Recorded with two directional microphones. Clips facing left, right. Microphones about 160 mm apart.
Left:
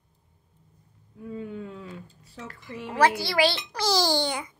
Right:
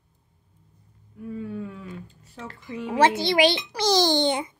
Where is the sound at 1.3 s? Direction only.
20° left (ahead or behind).